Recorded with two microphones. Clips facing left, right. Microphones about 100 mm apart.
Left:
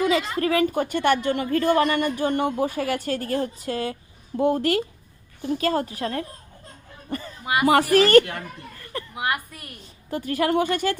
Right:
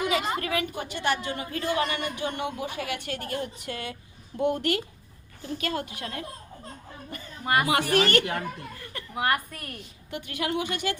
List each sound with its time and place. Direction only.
0.2 s a woman's voice: 30° right (ahead or behind)
0.4 s a woman's voice: 40° left (ahead or behind)
7.1 s a sound: 45° left (ahead or behind)
7.4 s speech: 5° left (ahead or behind)
7.9 s a woman's voice: 35° left (ahead or behind)
8.2 s a child's voice: 15° right (ahead or behind)
9.1 s a woman's voice: 5° left (ahead or behind)
10.1 s a woman's voice: 40° left (ahead or behind)